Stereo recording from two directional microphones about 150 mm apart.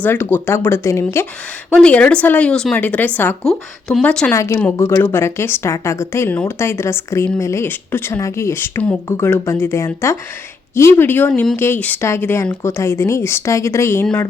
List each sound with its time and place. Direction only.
0.0 s speech: 15° left (ahead or behind)
4.3 s a woman's voice: 20° left (ahead or behind)